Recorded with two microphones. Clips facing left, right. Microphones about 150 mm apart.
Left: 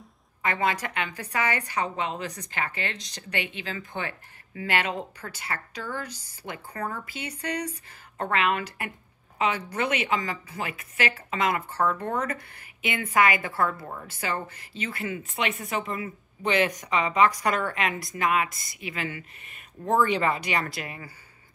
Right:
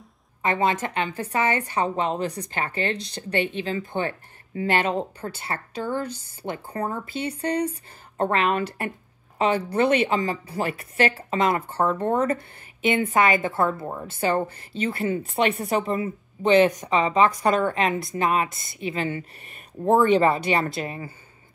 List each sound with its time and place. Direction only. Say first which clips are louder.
0.4 s a woman's voice: right 4 dB; 25° right (ahead or behind)